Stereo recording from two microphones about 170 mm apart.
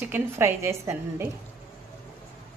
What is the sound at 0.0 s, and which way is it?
A woman's voice, 15° right (ahead or behind).